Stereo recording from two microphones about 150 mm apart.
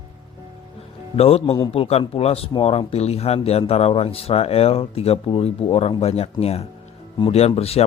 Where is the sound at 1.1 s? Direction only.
40° left (ahead or behind).